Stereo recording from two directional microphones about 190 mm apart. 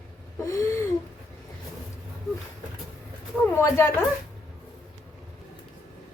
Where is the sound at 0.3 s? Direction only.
15° left (ahead or behind).